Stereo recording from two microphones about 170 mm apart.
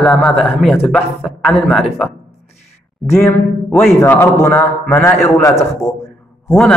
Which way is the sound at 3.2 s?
10° left (ahead or behind).